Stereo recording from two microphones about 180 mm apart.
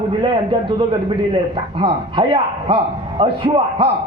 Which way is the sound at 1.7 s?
25° right (ahead or behind).